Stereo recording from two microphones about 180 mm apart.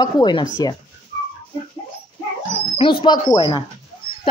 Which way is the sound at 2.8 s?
30° left (ahead or behind).